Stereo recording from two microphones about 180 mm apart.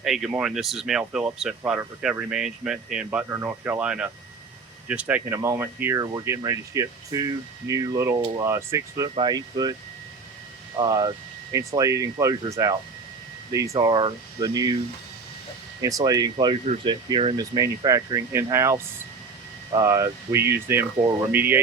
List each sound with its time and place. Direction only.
0.0 s speech: centre (ahead or behind); by 9.7 s 20° right (ahead or behind)
10.8 s speech: 20° right (ahead or behind)
15.8 s speech: 20° right (ahead or behind)